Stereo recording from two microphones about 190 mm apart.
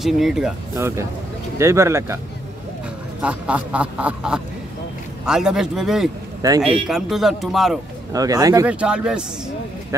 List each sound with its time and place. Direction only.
0.0 s speech: centre (ahead or behind)
0.7 s quack: 15° right (ahead or behind)
3.2 s quack: 5° right (ahead or behind)
5.2 s speech: 5° right (ahead or behind)
6.4 s speech: 20° right (ahead or behind)
6.9 s speech: centre (ahead or behind)
8.1 s speech: 20° right (ahead or behind)
8.6 s speech: 5° right (ahead or behind)